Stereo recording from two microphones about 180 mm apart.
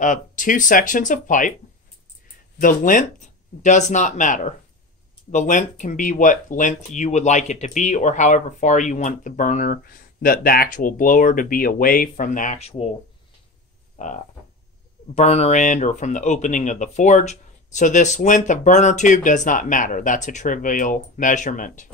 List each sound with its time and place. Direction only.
0.0 s speech: 45° left (ahead or behind)
2.6 s speech: 50° left (ahead or behind)
13.9 s frog: 45° left (ahead or behind)
15.1 s speech: 35° left (ahead or behind)